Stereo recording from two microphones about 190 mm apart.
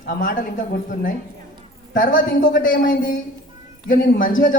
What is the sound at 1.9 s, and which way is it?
A woman's voice, 45° left (ahead or behind).